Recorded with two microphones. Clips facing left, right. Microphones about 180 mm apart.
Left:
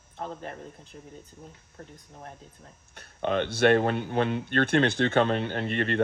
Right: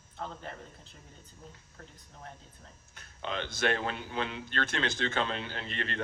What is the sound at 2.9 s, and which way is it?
Speech, 55° left (ahead or behind).